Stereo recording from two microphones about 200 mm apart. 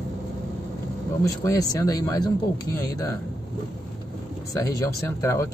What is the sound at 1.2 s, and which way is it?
Speech, 15° left (ahead or behind).